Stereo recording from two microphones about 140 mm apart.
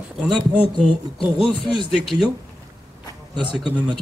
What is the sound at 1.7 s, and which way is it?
Speech, centre (ahead or behind).